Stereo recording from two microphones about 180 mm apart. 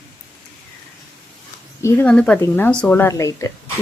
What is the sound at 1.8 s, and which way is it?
Speech, 10° left (ahead or behind).